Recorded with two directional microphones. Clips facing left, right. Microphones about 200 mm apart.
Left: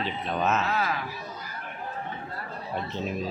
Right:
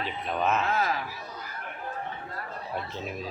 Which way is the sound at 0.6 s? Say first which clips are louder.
Even; 45° right (ahead or behind).